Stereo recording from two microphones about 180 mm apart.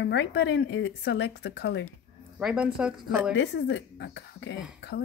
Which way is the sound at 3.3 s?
80° left.